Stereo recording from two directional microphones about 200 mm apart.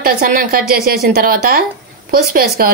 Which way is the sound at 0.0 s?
50° right (ahead or behind).